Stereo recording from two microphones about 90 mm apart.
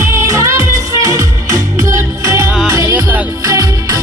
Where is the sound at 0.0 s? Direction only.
30° right (ahead or behind).